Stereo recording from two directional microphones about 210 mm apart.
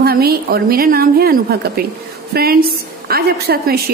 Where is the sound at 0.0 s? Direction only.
45° right (ahead or behind).